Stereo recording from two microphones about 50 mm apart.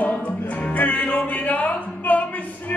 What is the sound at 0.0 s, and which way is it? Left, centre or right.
Music, left.